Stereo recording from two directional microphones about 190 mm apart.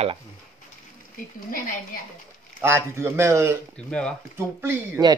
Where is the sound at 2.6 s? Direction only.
10° right (ahead or behind).